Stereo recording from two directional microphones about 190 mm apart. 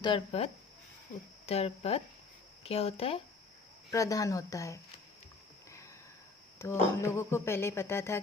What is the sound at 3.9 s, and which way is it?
Speech, 15° left (ahead or behind).